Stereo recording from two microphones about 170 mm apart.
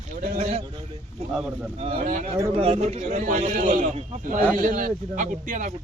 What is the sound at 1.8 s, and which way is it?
Speech, 35° right (ahead or behind).